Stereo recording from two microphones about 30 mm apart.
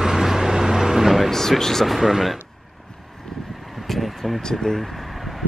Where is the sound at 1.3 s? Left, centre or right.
Centre.